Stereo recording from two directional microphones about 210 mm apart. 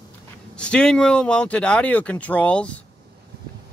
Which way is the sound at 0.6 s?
5° left (ahead or behind).